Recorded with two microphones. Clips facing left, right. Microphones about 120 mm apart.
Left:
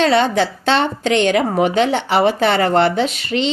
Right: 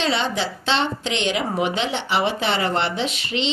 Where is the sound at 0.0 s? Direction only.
50° left (ahead or behind).